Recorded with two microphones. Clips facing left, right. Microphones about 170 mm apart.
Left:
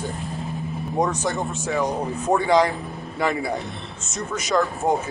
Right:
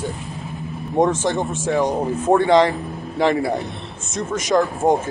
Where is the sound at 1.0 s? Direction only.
Centre (ahead or behind).